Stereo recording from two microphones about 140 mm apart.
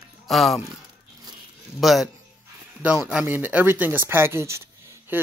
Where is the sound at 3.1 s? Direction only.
10° right (ahead or behind).